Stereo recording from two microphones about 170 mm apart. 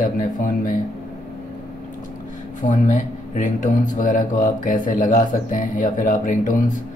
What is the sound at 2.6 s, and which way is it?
Speech, 45° left (ahead or behind).